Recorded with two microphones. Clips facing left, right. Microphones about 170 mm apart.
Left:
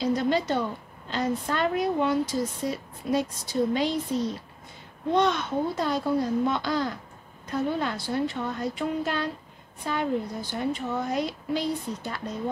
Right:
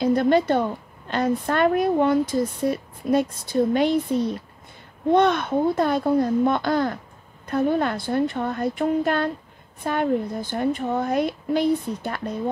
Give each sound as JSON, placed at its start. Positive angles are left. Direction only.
{"t": 0.0, "sound": "speech", "side_deg": -55}